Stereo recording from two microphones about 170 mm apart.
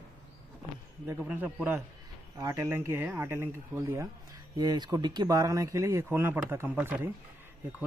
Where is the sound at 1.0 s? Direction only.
10° right (ahead or behind).